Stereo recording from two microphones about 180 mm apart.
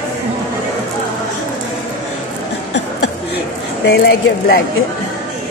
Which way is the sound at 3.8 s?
65° left (ahead or behind).